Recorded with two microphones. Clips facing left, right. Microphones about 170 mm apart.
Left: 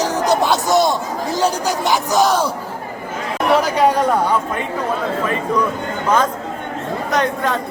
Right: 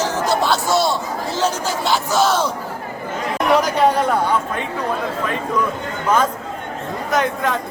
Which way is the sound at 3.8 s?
10° left (ahead or behind).